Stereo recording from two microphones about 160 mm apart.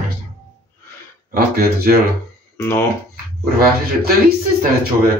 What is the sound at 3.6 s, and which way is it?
Speech, 70° right (ahead or behind).